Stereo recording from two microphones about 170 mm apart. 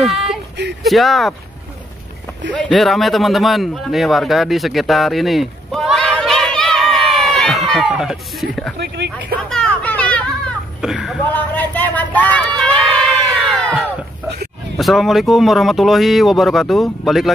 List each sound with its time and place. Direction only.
0.0 s a sound: centre (ahead or behind)
0.8 s speech: centre (ahead or behind)
2.5 s a man's voice: centre (ahead or behind)
8.7 s speech: 70° right (ahead or behind)
9.5 s children playing: 5° left (ahead or behind)
11.3 s a sound: 10° left (ahead or behind)
14.8 s speech: centre (ahead or behind)